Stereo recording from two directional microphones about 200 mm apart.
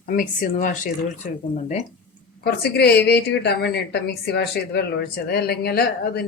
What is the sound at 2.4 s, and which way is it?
A woman's voice, 55° left (ahead or behind).